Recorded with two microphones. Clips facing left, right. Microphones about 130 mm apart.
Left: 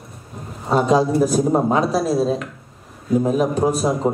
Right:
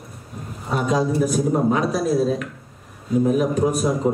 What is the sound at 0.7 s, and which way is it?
A man's voice, 30° left (ahead or behind).